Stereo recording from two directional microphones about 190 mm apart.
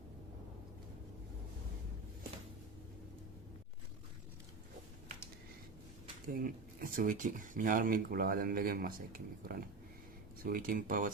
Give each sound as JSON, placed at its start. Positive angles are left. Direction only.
{"t": 6.2, "sound": "speech", "side_deg": -50}